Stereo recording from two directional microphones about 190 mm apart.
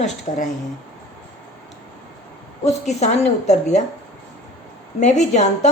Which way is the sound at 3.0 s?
35° left (ahead or behind).